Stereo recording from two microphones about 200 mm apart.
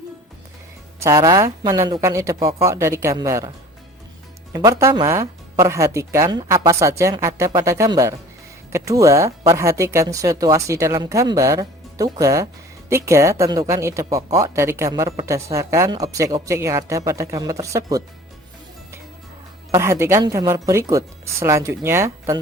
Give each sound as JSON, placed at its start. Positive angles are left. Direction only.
{"t": 0.9, "sound": "speech", "side_deg": -15}
{"t": 4.5, "sound": "speech", "side_deg": -15}
{"t": 19.7, "sound": "speech", "side_deg": -15}